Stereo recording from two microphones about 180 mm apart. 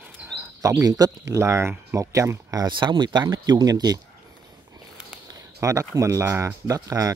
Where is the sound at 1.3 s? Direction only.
15° right (ahead or behind).